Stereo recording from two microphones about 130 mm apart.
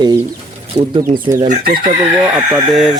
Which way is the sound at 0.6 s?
45° right (ahead or behind).